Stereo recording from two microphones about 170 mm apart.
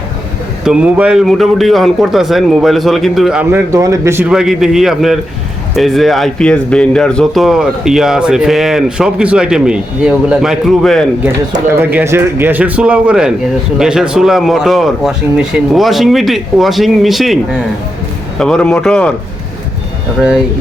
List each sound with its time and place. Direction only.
0.6 s speech: 5° right (ahead or behind)
3.5 s speech: 20° right (ahead or behind)
4.3 s speech: 5° right (ahead or behind)
11.8 s speech: 10° right (ahead or behind); by 19.1 s 5° left (ahead or behind)